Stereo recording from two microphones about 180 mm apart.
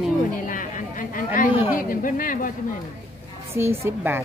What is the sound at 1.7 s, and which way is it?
Speech, 50° left (ahead or behind).